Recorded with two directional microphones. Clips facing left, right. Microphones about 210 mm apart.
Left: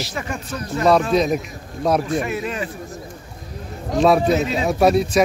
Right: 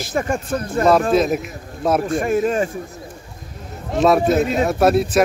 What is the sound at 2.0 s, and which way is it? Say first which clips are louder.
Speech: right 5 dB; 50° right (ahead or behind).